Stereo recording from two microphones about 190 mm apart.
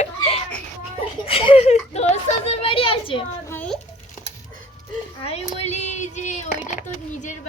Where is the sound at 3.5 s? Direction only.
5° left (ahead or behind).